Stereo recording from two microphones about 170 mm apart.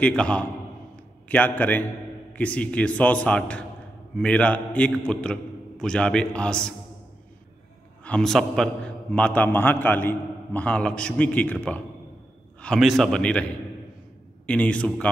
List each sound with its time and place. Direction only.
0.0 s a man's voice: 5° left (ahead or behind)
8.0 s a man's voice: 5° left (ahead or behind)